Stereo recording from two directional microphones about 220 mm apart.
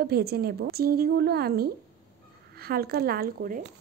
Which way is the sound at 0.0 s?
45° right (ahead or behind).